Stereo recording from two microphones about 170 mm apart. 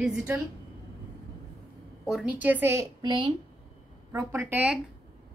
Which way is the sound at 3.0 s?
30° right (ahead or behind).